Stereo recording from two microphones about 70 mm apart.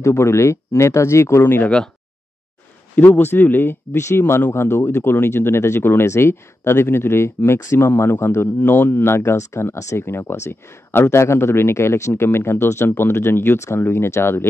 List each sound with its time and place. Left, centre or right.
0.0 s speech: left
3.0 s speech: left
3.9 s speech: left